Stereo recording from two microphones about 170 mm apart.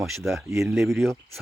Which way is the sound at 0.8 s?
15° right (ahead or behind).